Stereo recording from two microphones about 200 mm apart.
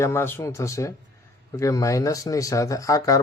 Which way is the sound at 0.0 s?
10° left (ahead or behind).